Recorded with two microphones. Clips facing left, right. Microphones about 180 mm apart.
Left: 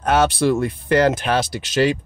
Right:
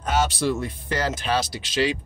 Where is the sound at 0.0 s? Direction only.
60° left (ahead or behind).